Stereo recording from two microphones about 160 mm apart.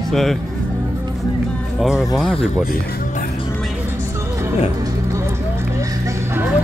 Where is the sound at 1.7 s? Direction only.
5° right (ahead or behind).